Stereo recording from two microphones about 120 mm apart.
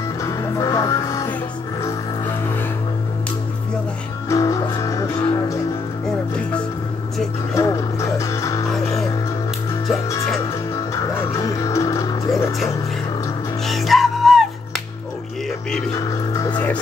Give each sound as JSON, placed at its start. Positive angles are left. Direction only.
{"t": 0.2, "sound": "music", "side_deg": 25}
{"t": 4.3, "sound": "music", "side_deg": 30}
{"t": 7.5, "sound": "music", "side_deg": 25}
{"t": 9.8, "sound": "music", "side_deg": 25}
{"t": 13.7, "sound": "music", "side_deg": 0}
{"t": 16.0, "sound": "music", "side_deg": 30}